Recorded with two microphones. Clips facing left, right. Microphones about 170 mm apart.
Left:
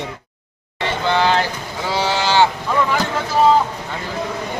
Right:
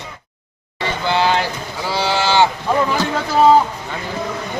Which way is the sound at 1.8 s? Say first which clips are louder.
Right 1 dB; 20° left (ahead or behind).